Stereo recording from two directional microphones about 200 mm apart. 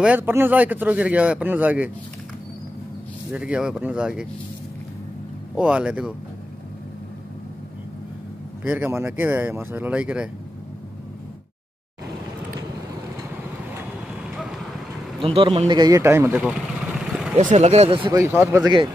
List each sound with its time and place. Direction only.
0.0 s speech: 10° right (ahead or behind)
3.3 s speech: 5° right (ahead or behind)
5.6 s speech: 5° right (ahead or behind)
8.6 s speech: 10° right (ahead or behind)
15.2 s a man's voice: 30° right (ahead or behind)
15.8 s speech: 15° right (ahead or behind)
17.4 s speech: 35° right (ahead or behind)
18.2 s speech: 15° right (ahead or behind)